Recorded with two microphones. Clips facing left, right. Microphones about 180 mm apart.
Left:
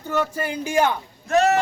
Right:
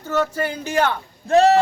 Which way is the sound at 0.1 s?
10° left (ahead or behind).